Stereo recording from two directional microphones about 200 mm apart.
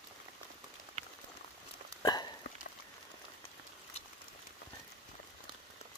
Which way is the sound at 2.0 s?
20° left (ahead or behind).